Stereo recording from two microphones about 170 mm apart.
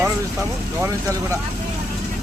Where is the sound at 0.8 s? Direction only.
15° right (ahead or behind).